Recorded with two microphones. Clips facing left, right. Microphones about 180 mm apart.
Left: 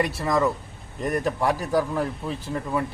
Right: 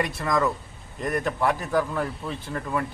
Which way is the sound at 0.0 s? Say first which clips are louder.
Left 2 dB; 30° left (ahead or behind).